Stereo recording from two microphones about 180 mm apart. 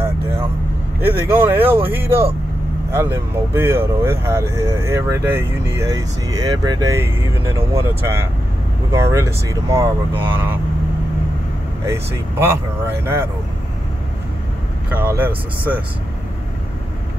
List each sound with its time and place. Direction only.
1.3 s speech: 10° right (ahead or behind)
11.8 s speech: 15° right (ahead or behind)
14.9 s speech: 10° right (ahead or behind)